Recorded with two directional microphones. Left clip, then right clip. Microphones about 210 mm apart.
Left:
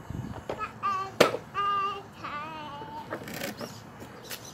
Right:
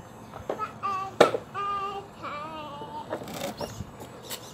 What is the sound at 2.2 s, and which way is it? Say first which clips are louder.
Child singing: even; 30° left (ahead or behind).